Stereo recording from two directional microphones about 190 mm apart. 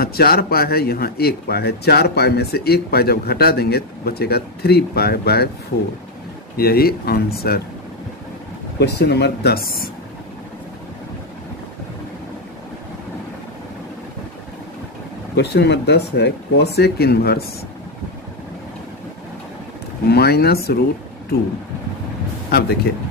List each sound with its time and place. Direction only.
0.0 s speech: 55° left (ahead or behind)
6.5 s speech: 55° left (ahead or behind)
8.7 s speech: 60° left (ahead or behind)
15.3 s speech: 60° left (ahead or behind)
20.1 s speech: 55° left (ahead or behind)
22.5 s speech: 55° left (ahead or behind)